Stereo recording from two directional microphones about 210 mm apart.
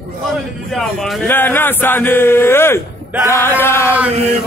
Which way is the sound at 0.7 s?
Centre (ahead or behind).